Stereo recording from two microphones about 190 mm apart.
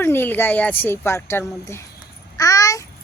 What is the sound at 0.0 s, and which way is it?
Speech, 10° left (ahead or behind).